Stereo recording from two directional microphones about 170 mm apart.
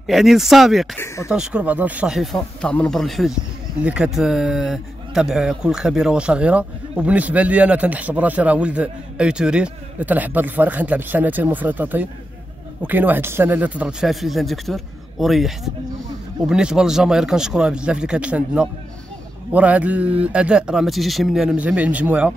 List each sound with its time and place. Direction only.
0.0 s speech: centre (ahead or behind)
0.9 s speech: 15° left (ahead or behind)
1.3 s speech: 5° right (ahead or behind)